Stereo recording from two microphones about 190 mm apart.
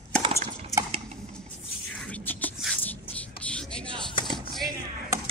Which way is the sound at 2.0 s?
10° left (ahead or behind).